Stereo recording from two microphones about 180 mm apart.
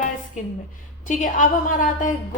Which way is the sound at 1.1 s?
45° left (ahead or behind).